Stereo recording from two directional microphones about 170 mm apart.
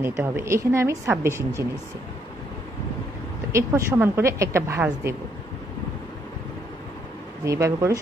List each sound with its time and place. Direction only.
0.0 s a woman's voice: 15° right (ahead or behind)
3.5 s a woman's voice: 15° right (ahead or behind)
7.4 s a woman's voice: 15° right (ahead or behind)